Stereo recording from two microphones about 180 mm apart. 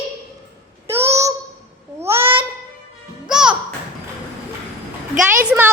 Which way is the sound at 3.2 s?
5° right (ahead or behind).